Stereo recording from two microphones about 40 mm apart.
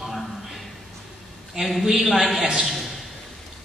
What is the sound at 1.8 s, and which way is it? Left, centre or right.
Speech, centre.